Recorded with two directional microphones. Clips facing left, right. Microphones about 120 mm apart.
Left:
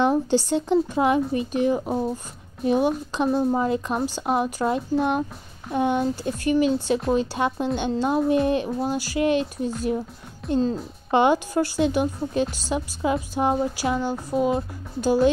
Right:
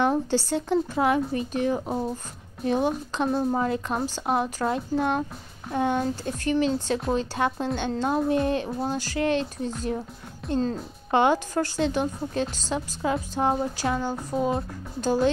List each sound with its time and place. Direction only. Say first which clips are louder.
0.0 s a woman's voice: left 3 dB; 15° left (ahead or behind)
3.1 s a woman's voice: left 3 dB; 15° left (ahead or behind)
10.4 s speech: left 3 dB; centre (ahead or behind)
11.1 s a woman's voice: left 2 dB; 15° left (ahead or behind)